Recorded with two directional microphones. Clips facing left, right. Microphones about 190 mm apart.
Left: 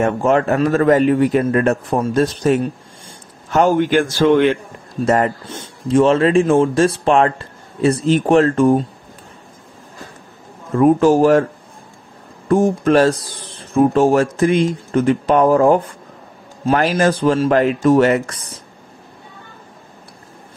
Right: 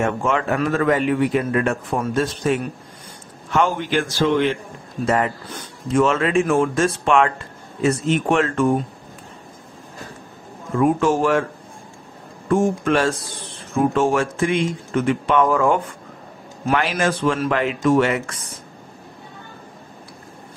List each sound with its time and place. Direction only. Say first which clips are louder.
0.0 s a man's voice: left 5 dB; 40° left (ahead or behind); by 4.6 s 60° left (ahead or behind)
5.0 s speech: left 4 dB; 40° left (ahead or behind)
5.5 s speech: left 5 dB; 30° left (ahead or behind)
10.8 s speech: left 6 dB; 35° left (ahead or behind)
12.4 s speech: left 4 dB; 35° left (ahead or behind)